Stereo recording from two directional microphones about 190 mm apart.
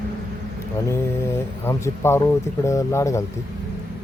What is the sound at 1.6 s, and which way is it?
Speech, 15° left (ahead or behind).